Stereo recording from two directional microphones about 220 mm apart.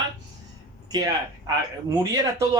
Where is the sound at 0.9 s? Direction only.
15° right (ahead or behind).